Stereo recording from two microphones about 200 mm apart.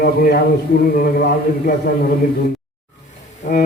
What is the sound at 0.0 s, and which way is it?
A man's voice, 50° left (ahead or behind).